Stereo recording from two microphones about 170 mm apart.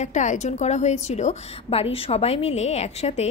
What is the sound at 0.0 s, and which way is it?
A woman's voice, 45° left (ahead or behind).